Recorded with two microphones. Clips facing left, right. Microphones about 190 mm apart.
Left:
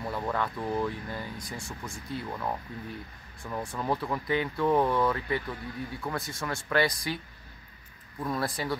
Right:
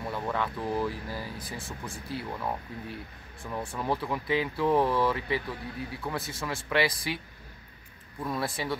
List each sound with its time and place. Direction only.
0.0 s speech: centre (ahead or behind)
1.9 s speech: 30° right (ahead or behind)
2.3 s speech: centre (ahead or behind)
8.2 s speech: centre (ahead or behind)